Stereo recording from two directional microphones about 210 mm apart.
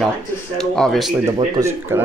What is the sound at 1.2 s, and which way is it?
Speech, 15° right (ahead or behind).